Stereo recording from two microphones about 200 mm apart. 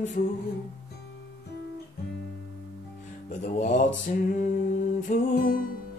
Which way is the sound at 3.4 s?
40° left (ahead or behind).